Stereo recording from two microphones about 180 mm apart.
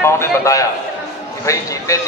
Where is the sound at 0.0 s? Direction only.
15° left (ahead or behind).